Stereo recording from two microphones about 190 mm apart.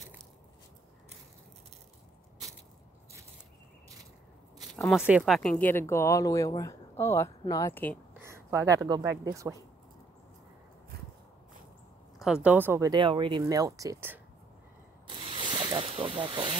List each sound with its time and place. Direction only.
4.7 s speech: centre (ahead or behind)
8.1 s speech: 15° right (ahead or behind)
12.4 s speech: 10° right (ahead or behind)
12.9 s speech: 25° right (ahead or behind)
15.0 s zipper: 25° right (ahead or behind)